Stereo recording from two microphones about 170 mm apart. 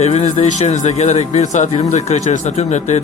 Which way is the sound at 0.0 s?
40° left (ahead or behind).